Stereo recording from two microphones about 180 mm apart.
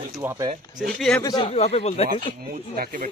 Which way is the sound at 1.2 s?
20° left (ahead or behind).